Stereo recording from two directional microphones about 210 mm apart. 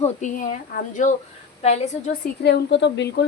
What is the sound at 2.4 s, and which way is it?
Speech, 55° left (ahead or behind).